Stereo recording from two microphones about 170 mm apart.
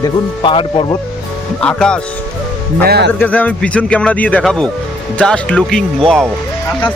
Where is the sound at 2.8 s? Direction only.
70° right (ahead or behind).